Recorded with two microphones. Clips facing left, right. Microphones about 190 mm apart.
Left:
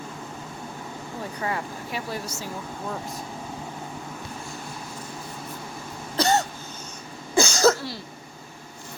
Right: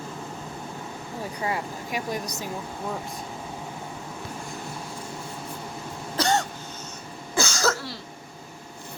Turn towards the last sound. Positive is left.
turn(degrees=15)  # may be behind; listen again after turning